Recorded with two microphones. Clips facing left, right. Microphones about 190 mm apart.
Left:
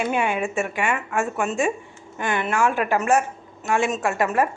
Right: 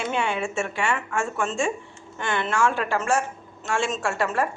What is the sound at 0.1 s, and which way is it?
Speech, 15° left (ahead or behind).